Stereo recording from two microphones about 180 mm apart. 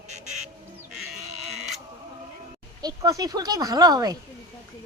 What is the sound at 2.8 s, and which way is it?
Speech, 20° right (ahead or behind).